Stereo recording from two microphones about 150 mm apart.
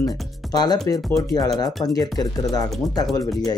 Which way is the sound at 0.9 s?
20° left (ahead or behind).